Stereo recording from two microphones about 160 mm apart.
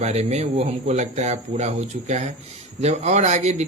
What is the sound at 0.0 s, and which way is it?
A man's voice, 45° right (ahead or behind).